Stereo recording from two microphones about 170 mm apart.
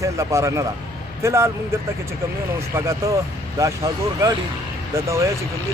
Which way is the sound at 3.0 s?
15° right (ahead or behind).